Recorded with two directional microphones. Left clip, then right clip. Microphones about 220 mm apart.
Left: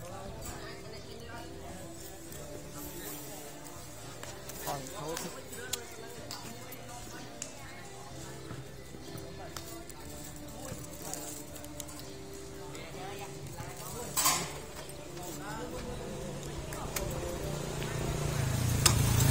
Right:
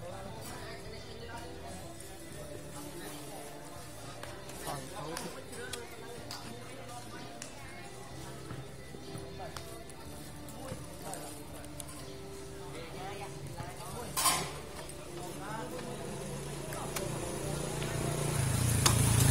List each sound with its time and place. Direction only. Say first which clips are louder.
14.1 s stir: left 1 dB; centre (ahead or behind)
16.6 s vehicle: even; 50° right (ahead or behind)
18.9 s a sound: even; 30° right (ahead or behind)